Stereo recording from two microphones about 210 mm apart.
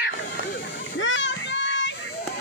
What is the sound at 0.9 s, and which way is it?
Children playing, 60° left (ahead or behind).